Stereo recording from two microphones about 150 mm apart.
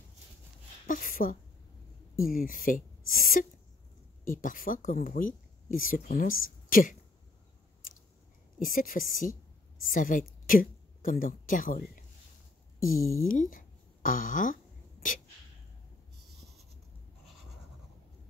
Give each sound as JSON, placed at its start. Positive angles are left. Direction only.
{"t": 0.8, "sound": "a woman's voice", "side_deg": 65}
{"t": 8.5, "sound": "a woman's voice", "side_deg": 65}
{"t": 13.2, "sound": "a sound", "side_deg": 65}